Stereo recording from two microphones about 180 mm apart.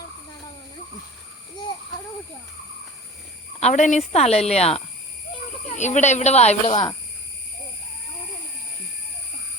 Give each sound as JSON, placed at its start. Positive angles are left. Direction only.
{"t": 3.6, "sound": "speech", "side_deg": 40}